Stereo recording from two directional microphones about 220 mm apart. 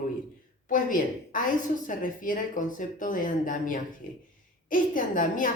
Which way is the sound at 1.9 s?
40° left (ahead or behind).